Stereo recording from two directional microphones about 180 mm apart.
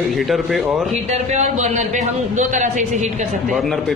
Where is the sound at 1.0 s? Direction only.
40° right (ahead or behind).